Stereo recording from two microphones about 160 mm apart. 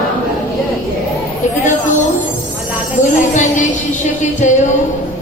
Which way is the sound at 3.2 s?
50° left (ahead or behind).